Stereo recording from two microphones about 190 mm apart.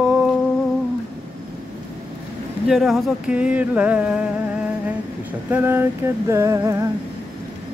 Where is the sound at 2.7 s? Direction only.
Centre (ahead or behind).